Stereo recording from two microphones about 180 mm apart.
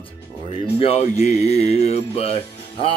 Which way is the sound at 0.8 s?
35° left (ahead or behind).